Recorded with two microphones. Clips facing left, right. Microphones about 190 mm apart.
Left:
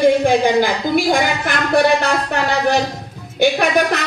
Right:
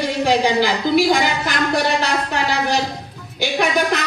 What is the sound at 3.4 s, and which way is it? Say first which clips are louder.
Speech: left 4 dB; 60° left (ahead or behind).